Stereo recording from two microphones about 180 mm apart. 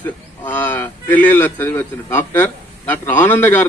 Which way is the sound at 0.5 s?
10° left (ahead or behind).